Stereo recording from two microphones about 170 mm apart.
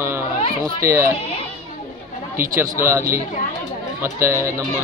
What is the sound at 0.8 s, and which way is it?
Speech, 15° right (ahead or behind).